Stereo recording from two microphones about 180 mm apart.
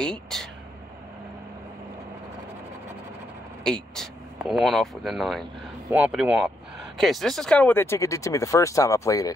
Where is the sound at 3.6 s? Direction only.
5° left (ahead or behind).